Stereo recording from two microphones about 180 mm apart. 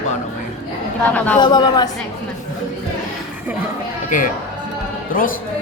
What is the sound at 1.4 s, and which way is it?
Speech, 25° left (ahead or behind).